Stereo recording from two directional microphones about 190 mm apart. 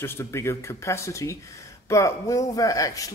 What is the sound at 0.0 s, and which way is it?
Speech, 15° left (ahead or behind).